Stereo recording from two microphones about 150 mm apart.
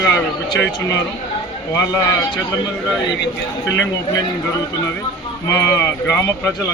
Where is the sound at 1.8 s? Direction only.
20° left (ahead or behind).